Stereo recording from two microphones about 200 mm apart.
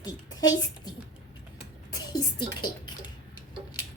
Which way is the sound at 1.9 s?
20° left (ahead or behind).